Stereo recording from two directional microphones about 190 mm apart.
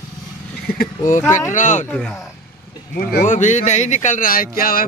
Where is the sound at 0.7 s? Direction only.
50° left (ahead or behind).